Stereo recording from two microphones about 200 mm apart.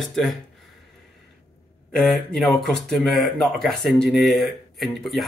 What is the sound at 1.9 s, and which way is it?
Speech, centre (ahead or behind).